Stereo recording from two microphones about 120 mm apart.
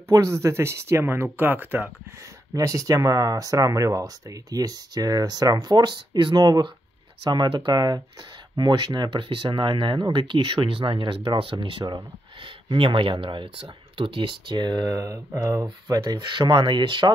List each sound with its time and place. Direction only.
0.1 s speech: 25° right (ahead or behind)
2.5 s speech: 30° right (ahead or behind)